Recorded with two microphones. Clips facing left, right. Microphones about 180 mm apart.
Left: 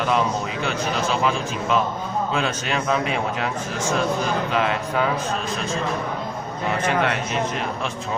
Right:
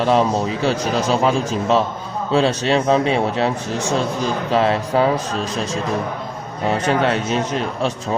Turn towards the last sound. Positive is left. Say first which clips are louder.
# right 4 dB
turn(degrees=-30)  # may be behind; listen again after turning